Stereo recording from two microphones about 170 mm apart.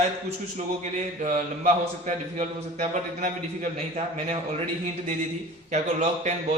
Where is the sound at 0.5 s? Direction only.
45° right (ahead or behind).